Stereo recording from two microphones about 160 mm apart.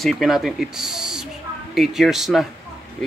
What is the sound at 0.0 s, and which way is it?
Speech, centre (ahead or behind).